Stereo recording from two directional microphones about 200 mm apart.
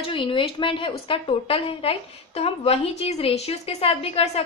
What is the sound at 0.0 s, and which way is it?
A woman's voice, 25° left (ahead or behind).